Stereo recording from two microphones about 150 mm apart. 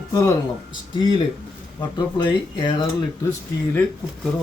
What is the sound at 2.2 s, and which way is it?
Speech, 30° left (ahead or behind).